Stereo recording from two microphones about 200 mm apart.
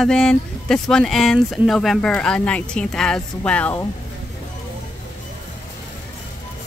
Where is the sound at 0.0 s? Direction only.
5° left (ahead or behind).